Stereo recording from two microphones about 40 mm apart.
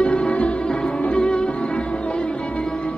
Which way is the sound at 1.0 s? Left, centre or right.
Left.